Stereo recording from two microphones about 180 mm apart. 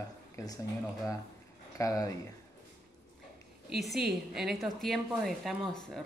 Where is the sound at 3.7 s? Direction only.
Centre (ahead or behind).